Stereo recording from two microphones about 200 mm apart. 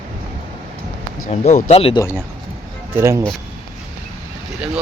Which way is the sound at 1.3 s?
35° left (ahead or behind).